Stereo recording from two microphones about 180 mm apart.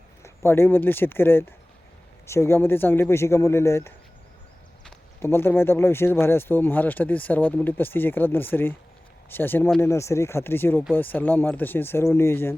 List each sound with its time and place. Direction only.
0.4 s speech: 15° left (ahead or behind)